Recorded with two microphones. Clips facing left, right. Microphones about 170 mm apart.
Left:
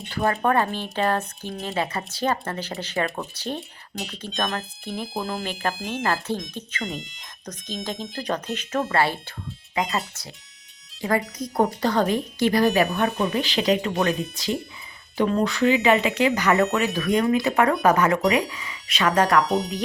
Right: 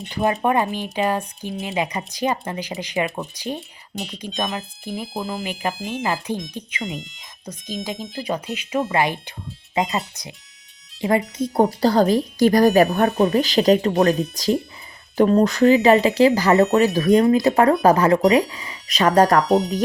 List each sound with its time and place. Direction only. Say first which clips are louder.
0.1 s speech: right 2 dB; 15° right (ahead or behind); by 6.1 s centre (ahead or behind)
6.5 s speech: right 2 dB; 10° right (ahead or behind)
6.8 s speech: right 1 dB; centre (ahead or behind); by 9.9 s 25° right (ahead or behind)
11.2 s speech: right 7 dB; 5° right (ahead or behind)
11.5 s speech: right 4 dB; 30° right (ahead or behind)
19.5 s speech: right 6 dB; centre (ahead or behind)